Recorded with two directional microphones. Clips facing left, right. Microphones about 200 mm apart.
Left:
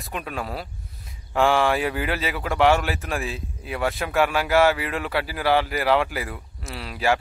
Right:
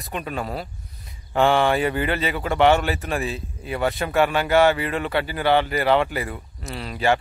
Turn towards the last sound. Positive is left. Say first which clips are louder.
# right 2 dB
turn(degrees=0)  # may be behind; listen again after turning